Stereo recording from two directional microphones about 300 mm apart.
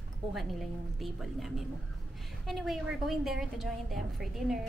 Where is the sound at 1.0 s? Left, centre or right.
Centre.